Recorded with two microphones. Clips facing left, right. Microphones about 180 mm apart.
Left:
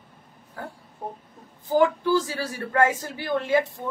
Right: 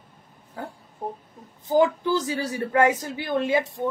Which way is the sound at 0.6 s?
20° right (ahead or behind).